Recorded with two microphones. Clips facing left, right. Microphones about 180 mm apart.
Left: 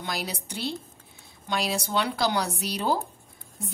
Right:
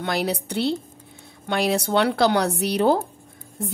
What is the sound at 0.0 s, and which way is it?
Speech, 60° right (ahead or behind).